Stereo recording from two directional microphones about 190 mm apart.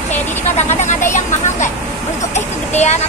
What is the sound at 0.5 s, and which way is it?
Speech, 40° left (ahead or behind).